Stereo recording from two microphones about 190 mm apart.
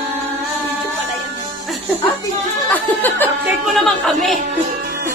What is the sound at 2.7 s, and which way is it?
Speech, 10° left (ahead or behind).